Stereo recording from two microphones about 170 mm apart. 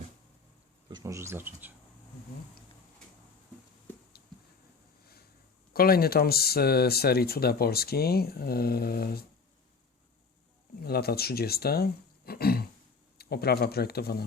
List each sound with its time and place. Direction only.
0.9 s speech: 20° right (ahead or behind)
5.7 s speech: 60° left (ahead or behind)
10.8 s speech: 65° left (ahead or behind)